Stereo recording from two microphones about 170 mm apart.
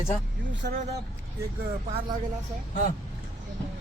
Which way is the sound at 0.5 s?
90° right.